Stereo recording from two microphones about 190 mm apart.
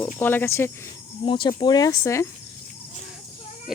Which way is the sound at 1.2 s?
25° left (ahead or behind).